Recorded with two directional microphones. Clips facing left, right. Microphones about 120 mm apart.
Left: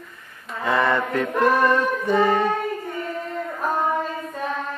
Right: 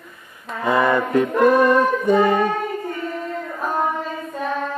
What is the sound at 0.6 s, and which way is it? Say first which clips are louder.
Music: right 3 dB; 10° right (ahead or behind).